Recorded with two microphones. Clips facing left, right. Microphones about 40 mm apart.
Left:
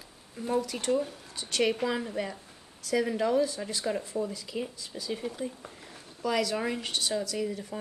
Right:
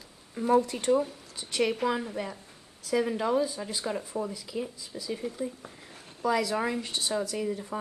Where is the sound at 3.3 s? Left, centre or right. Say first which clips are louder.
Left 1 dB; centre.